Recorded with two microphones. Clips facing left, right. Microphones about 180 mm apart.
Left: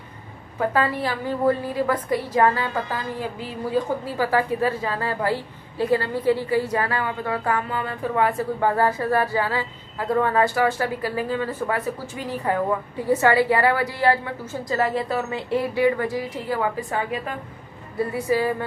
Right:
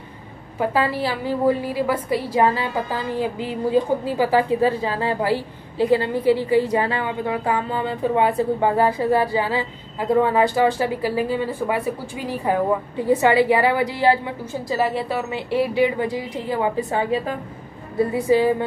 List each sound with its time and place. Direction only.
0.6 s a woman's voice: 10° right (ahead or behind)